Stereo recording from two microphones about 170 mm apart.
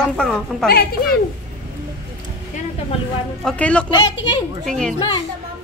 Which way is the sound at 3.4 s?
5° left (ahead or behind).